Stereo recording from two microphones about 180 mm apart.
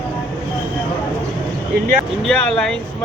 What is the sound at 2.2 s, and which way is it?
Speech, 5° left (ahead or behind).